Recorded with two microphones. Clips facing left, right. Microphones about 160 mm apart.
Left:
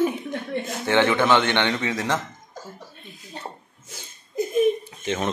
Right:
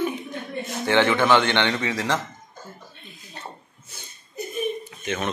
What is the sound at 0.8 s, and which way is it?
A man's voice, 20° left (ahead or behind).